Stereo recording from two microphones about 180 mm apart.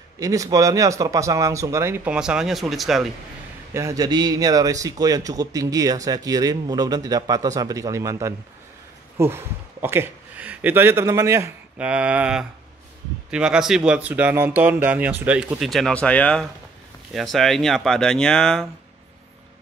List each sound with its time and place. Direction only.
0.2 s speech: 20° right (ahead or behind); by 3.1 s centre (ahead or behind)
3.7 s speech: 20° right (ahead or behind); by 18.7 s 5° left (ahead or behind)